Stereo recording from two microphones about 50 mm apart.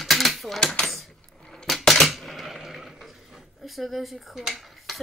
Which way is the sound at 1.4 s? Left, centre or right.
Centre.